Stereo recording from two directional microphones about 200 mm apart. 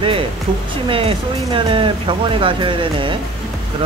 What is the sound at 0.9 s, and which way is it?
Speech, 30° right (ahead or behind).